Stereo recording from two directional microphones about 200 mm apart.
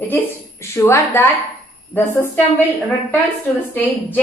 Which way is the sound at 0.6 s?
15° left (ahead or behind).